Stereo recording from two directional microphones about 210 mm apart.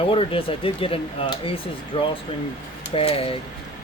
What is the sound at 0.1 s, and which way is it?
Speech, 25° left (ahead or behind).